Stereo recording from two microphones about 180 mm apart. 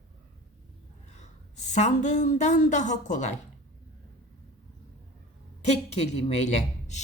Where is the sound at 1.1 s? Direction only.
40° left (ahead or behind).